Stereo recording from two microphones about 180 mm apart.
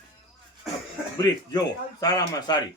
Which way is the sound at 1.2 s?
20° left (ahead or behind).